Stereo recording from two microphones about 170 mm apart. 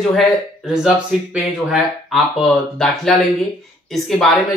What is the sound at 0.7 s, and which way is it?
Speech, 5° right (ahead or behind).